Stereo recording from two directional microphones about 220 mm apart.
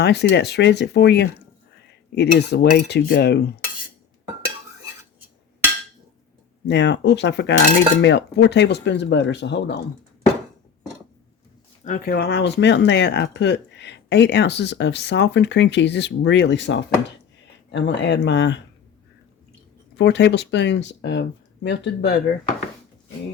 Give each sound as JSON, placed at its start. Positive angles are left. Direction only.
{"t": 0.0, "sound": "speech", "side_deg": 50}
{"t": 6.7, "sound": "speech", "side_deg": 50}
{"t": 11.9, "sound": "speech", "side_deg": 45}
{"t": 20.0, "sound": "speech", "side_deg": 50}